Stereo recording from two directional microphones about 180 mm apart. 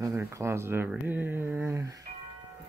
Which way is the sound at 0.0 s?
15° right (ahead or behind).